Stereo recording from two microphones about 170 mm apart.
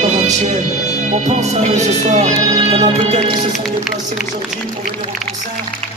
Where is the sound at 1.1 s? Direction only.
40° right (ahead or behind).